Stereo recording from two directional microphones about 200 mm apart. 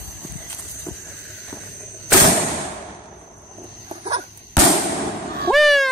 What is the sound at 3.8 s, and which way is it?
Dog, 30° right (ahead or behind).